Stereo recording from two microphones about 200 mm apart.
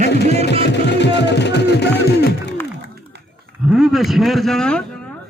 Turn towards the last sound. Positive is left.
turn(degrees=5)  # may be behind; listen again after turning